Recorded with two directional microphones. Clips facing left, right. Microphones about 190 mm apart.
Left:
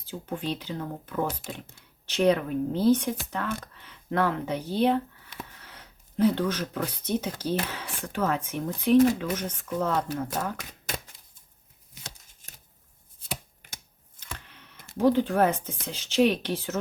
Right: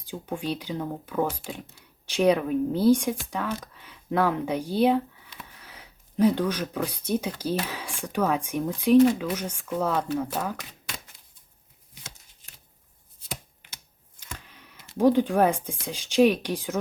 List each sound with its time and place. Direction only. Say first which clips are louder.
0.0 s speech: right 1 dB; 15° right (ahead or behind)
12.3 s shuffling cards: left 3 dB; 45° left (ahead or behind)
14.2 s a sound: even; 10° right (ahead or behind)
14.9 s speech: right 2 dB; 15° right (ahead or behind)